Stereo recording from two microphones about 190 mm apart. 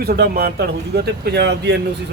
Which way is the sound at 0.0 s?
55° right (ahead or behind).